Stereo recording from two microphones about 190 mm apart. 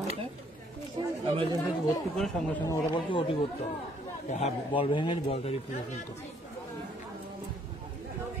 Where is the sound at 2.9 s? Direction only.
25° left (ahead or behind).